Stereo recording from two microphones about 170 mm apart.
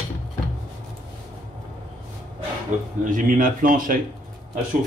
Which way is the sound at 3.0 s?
50° right (ahead or behind).